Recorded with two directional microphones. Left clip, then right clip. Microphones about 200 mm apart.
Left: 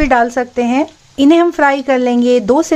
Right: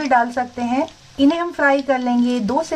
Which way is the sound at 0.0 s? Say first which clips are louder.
Left 5 dB; 50° left (ahead or behind).